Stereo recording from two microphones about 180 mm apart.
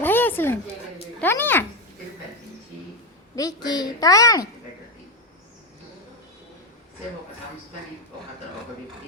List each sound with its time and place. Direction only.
0.0 s a sound: 10° left (ahead or behind)
1.2 s speech: 10° left (ahead or behind)
3.3 s a woman's voice: 20° left (ahead or behind)